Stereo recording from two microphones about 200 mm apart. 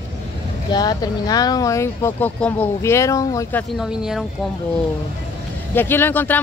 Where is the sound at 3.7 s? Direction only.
Centre (ahead or behind).